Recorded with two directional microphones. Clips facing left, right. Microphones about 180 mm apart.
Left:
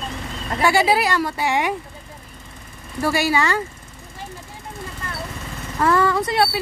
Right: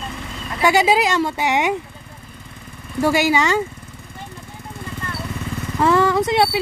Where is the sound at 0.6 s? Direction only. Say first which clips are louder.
Right 2 dB; 20° right (ahead or behind).